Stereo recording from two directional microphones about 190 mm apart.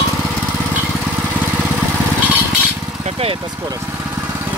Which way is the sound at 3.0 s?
35° right (ahead or behind).